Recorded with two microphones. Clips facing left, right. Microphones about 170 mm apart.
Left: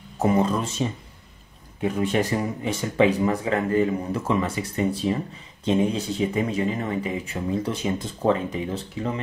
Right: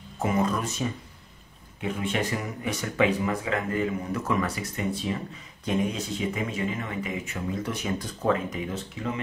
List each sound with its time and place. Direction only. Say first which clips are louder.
0.2 s speech: left 4 dB; 30° left (ahead or behind)